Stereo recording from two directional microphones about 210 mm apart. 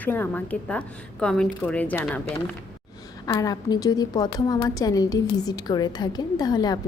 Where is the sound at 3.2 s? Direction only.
15° left (ahead or behind).